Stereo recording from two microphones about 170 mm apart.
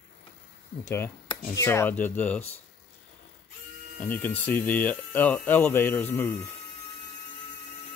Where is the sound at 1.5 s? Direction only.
15° left (ahead or behind).